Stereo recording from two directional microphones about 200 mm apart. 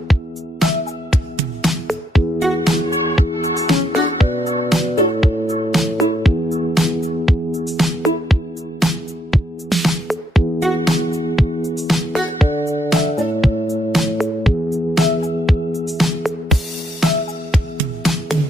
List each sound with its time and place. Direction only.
0.1 s music: centre (ahead or behind)